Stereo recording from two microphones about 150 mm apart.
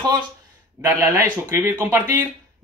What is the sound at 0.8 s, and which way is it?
Speech, 15° right (ahead or behind).